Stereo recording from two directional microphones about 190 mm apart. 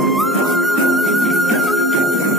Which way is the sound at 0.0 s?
Centre (ahead or behind).